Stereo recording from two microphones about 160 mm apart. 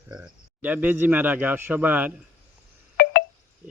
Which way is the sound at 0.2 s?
10° right (ahead or behind).